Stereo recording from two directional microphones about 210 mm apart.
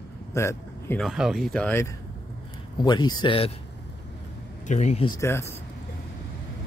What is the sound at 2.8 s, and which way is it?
Speech, 20° left (ahead or behind).